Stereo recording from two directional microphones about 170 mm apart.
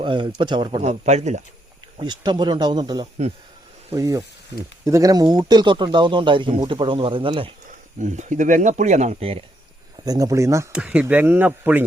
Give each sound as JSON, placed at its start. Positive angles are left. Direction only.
{"t": 0.0, "sound": "speech", "side_deg": -25}
{"t": 0.8, "sound": "speech", "side_deg": -40}
{"t": 2.0, "sound": "speech", "side_deg": -25}
{"t": 8.0, "sound": "speech", "side_deg": -45}
{"t": 10.1, "sound": "speech", "side_deg": -20}
{"t": 10.7, "sound": "speech", "side_deg": -5}